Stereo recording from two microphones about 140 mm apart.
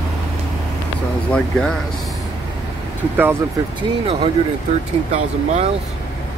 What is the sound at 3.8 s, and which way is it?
Speech, 40° right (ahead or behind).